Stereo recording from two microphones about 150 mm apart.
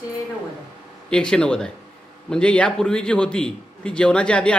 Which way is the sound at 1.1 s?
5° left (ahead or behind).